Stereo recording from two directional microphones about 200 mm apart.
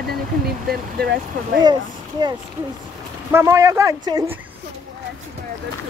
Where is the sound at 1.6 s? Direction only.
20° right (ahead or behind).